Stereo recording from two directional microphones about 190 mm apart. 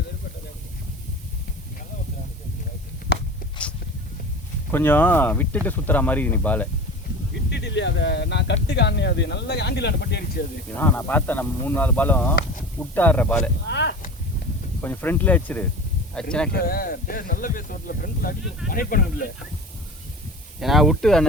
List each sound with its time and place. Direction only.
3.1 s a sound: 60° left (ahead or behind)
4.7 s speech: 10° left (ahead or behind)
7.5 s speech: 65° left (ahead or behind)
10.8 s speech: 10° left (ahead or behind)
13.7 s speech: 65° left (ahead or behind)
14.8 s speech: 10° left (ahead or behind)
16.5 s speech: 50° left (ahead or behind)
20.6 s speech: centre (ahead or behind)